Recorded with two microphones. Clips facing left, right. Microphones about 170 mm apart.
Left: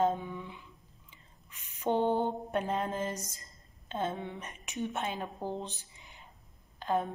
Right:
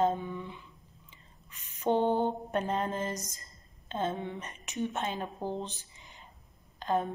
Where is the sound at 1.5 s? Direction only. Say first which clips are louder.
Right 2 dB; 10° left (ahead or behind).